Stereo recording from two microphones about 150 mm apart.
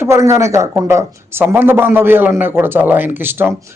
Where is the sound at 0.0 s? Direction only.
15° right (ahead or behind).